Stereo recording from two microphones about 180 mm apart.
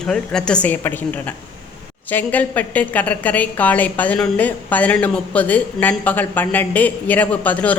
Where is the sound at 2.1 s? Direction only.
10° left (ahead or behind).